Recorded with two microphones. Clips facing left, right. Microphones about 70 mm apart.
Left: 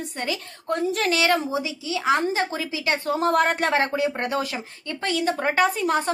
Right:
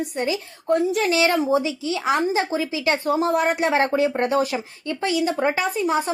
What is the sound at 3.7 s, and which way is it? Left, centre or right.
Speech, right.